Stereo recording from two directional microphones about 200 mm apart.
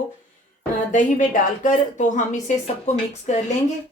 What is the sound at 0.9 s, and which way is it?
A woman's voice, 40° left (ahead or behind).